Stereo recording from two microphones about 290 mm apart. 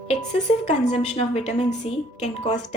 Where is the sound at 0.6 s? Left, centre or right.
Left.